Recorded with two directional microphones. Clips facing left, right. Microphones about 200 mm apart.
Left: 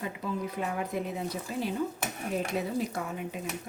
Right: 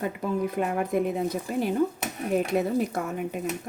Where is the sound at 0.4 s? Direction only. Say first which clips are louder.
Right 6 dB; 50° right (ahead or behind).